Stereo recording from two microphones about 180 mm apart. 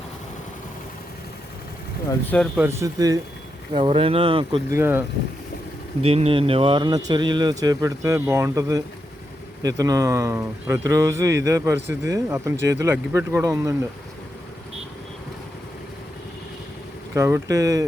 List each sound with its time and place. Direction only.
2.0 s speech: 10° left (ahead or behind)
2.6 s speech: 15° right (ahead or behind)
3.8 s speech: 30° right (ahead or behind)
4.7 s speech: 15° right (ahead or behind)
6.0 s speech: 35° right (ahead or behind); by 13.7 s 15° right (ahead or behind)
17.2 s speech: 15° right (ahead or behind)